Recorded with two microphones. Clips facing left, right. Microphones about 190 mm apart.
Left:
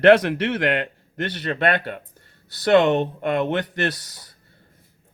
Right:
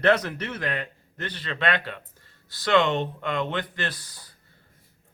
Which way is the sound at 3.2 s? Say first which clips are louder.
Left 6 dB; 55° left (ahead or behind).